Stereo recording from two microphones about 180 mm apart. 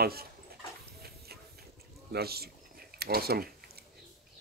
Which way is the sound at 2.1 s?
60° right (ahead or behind).